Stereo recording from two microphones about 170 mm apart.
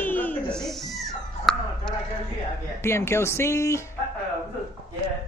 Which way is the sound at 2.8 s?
15° left (ahead or behind).